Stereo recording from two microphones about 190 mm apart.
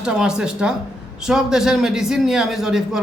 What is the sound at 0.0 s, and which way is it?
A man's voice, 5° right (ahead or behind).